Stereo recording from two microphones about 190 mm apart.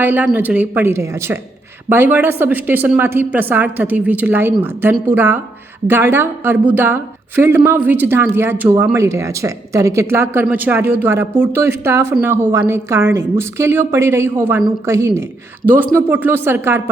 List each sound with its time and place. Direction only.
0.0 s a woman's voice: 10° right (ahead or behind)